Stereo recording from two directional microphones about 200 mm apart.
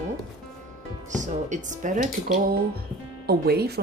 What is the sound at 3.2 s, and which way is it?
Speech, 55° right (ahead or behind).